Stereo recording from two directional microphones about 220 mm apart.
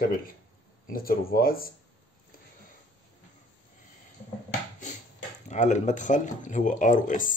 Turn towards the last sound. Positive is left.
turn(degrees=35)  # may be behind; listen again after turning